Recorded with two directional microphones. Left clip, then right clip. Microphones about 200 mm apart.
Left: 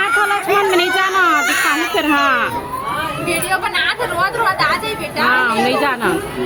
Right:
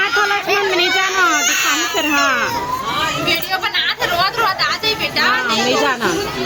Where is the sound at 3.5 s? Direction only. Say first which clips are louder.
Left 1 dB; 20° left (ahead or behind).